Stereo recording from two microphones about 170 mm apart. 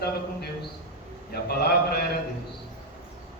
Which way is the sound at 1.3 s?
70° left (ahead or behind).